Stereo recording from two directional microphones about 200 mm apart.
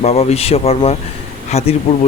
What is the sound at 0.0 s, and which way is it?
Speech, 30° left (ahead or behind).